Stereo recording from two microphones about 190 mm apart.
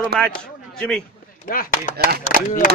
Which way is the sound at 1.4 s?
50° left (ahead or behind).